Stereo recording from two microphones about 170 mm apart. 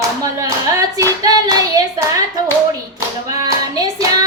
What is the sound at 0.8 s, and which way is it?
Clapping, 20° right (ahead or behind).